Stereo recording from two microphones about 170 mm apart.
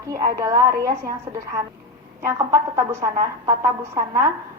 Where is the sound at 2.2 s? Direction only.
15° right (ahead or behind).